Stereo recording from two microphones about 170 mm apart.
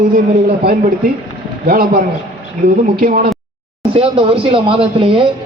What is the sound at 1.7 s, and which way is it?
A man's voice, 65° right (ahead or behind).